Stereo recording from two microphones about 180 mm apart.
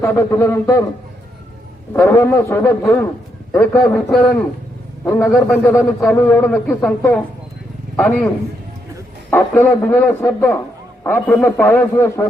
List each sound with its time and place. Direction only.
0.0 s a man's voice: 15° left (ahead or behind)
1.9 s a man's voice: 15° left (ahead or behind)
5.3 s a man's voice: centre (ahead or behind)
9.3 s a man's voice: 10° left (ahead or behind)